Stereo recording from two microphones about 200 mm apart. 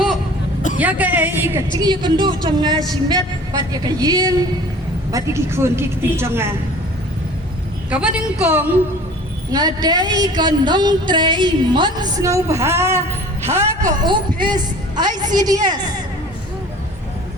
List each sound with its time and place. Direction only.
0.8 s a woman's voice: 10° right (ahead or behind)
1.7 s a woman's voice: 20° right (ahead or behind)
7.9 s a woman's voice: 5° right (ahead or behind)
9.5 s a woman's voice: 20° right (ahead or behind)